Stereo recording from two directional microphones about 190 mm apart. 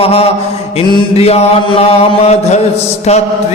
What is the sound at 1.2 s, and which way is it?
Music, 35° left (ahead or behind).